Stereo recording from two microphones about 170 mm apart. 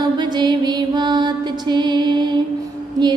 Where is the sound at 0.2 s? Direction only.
25° right (ahead or behind).